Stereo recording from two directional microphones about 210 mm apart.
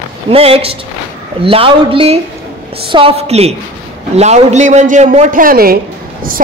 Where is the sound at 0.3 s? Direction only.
30° right (ahead or behind).